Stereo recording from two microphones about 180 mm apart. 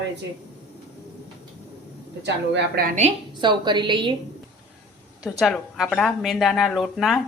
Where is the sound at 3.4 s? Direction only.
25° right (ahead or behind).